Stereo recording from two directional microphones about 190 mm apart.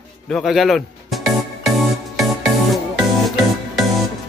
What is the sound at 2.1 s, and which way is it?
Music, centre (ahead or behind).